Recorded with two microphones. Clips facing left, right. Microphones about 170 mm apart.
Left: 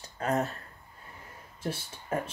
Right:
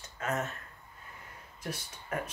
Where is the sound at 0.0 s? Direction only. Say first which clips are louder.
Left 5 dB; 35° left (ahead or behind).